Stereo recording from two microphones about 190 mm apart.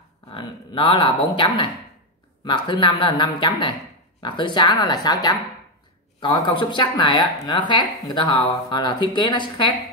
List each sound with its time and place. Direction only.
0.3 s speech: 25° left (ahead or behind)